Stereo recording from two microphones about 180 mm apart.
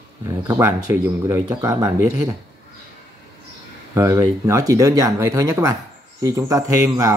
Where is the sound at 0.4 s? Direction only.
15° right (ahead or behind).